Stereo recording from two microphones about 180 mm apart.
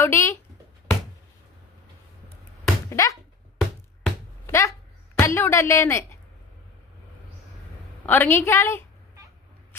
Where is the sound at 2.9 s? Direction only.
20° left (ahead or behind).